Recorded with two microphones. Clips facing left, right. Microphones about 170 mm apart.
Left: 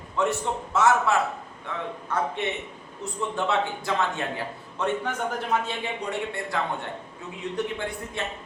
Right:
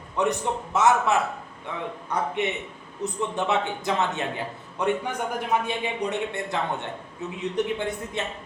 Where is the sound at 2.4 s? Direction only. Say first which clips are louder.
Right 2 dB; 20° right (ahead or behind).